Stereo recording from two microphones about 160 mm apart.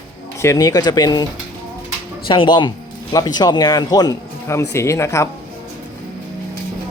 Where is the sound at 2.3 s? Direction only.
30° left (ahead or behind).